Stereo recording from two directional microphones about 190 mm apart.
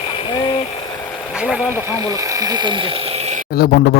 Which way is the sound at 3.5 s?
55° left (ahead or behind).